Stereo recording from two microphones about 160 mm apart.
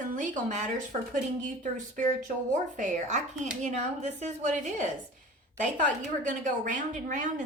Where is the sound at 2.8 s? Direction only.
50° right (ahead or behind).